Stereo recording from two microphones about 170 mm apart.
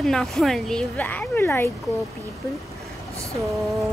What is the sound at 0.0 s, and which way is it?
Speech, centre (ahead or behind).